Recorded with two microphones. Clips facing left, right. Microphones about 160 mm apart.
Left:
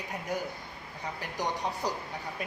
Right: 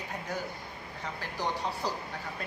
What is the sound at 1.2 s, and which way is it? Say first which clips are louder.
Speech: left 1 dB; 15° left (ahead or behind).